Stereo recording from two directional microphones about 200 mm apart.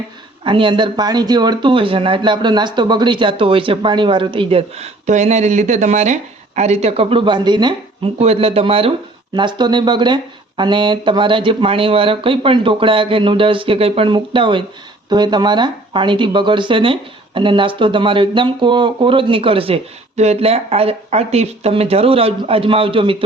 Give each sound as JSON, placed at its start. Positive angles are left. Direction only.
{"t": 0.4, "sound": "speech", "side_deg": -25}